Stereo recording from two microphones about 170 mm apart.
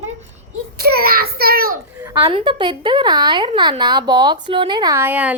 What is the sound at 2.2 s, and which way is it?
Speech, 30° right (ahead or behind).